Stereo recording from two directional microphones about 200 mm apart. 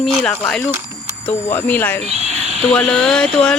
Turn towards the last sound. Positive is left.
turn(degrees=5)  # may be behind; listen again after turning